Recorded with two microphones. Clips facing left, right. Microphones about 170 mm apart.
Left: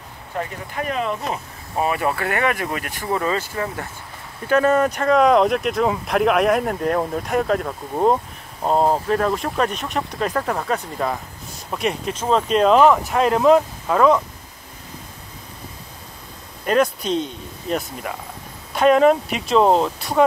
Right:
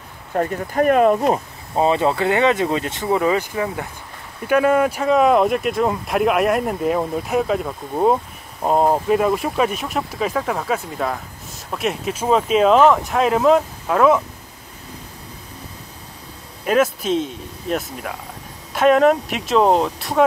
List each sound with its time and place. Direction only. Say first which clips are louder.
0.4 s speech: right 8 dB; 50° right (ahead or behind)
1.8 s speech: right 4 dB; 25° right (ahead or behind); by 14.2 s 5° right (ahead or behind)
16.6 s speech: right 1 dB; 5° right (ahead or behind)